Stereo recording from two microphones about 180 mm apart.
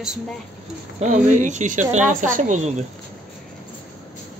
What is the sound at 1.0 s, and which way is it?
Speech, 40° right (ahead or behind).